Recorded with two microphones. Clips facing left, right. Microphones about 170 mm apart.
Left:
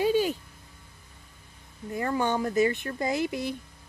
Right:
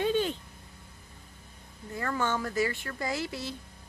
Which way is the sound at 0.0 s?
10° left (ahead or behind).